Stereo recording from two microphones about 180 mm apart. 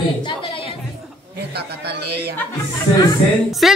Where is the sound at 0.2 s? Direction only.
30° left (ahead or behind).